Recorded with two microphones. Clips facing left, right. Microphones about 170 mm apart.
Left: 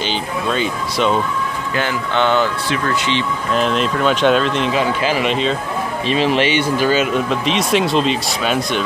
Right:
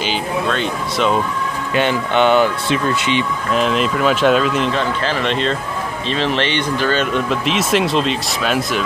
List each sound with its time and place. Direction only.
0.0 s speech: centre (ahead or behind)
1.8 s speech: 20° right (ahead or behind)
3.5 s speech: centre (ahead or behind)
4.7 s speech: 10° left (ahead or behind)